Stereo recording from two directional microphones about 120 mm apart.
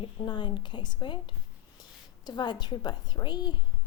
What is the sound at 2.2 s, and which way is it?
A woman's voice, 40° left (ahead or behind).